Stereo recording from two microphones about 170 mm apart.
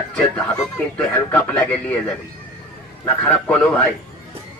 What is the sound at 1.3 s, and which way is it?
Speech, 15° left (ahead or behind).